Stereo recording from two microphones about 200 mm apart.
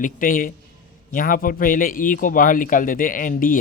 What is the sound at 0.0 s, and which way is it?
A man's voice, 40° left (ahead or behind).